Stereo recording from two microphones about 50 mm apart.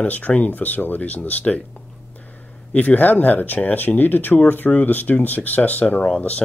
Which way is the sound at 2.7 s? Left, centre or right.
Left.